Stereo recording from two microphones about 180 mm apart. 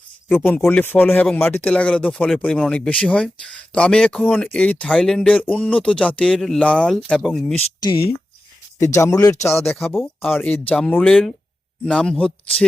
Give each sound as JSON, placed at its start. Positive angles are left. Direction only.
{"t": 0.4, "sound": "speech", "side_deg": 10}
{"t": 7.5, "sound": "speech", "side_deg": 30}
{"t": 8.8, "sound": "speech", "side_deg": 15}
{"t": 9.6, "sound": "speech", "side_deg": 5}